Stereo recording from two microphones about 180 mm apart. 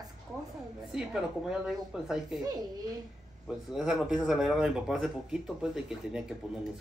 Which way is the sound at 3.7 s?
Centre (ahead or behind).